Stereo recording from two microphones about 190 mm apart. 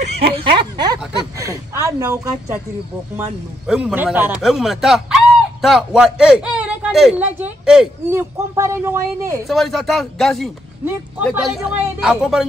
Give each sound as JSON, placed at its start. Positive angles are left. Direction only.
{"t": 0.6, "sound": "a sound", "side_deg": -20}
{"t": 3.2, "sound": "a man's voice", "side_deg": -5}
{"t": 9.5, "sound": "speech", "side_deg": 0}